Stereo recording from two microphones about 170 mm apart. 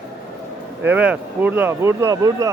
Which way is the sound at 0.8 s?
10° right (ahead or behind).